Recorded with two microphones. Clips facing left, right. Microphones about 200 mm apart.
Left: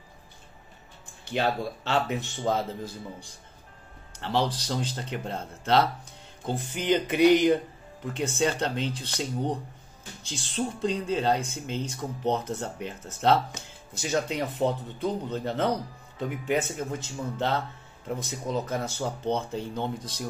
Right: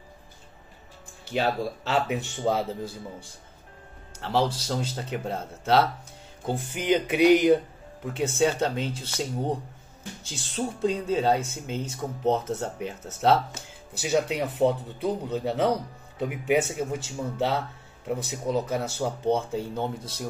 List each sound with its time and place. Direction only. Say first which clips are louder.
1.2 s a man's voice: right 1 dB; 5° right (ahead or behind)